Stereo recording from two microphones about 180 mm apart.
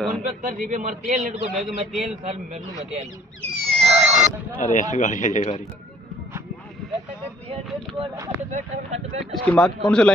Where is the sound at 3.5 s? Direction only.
35° right (ahead or behind).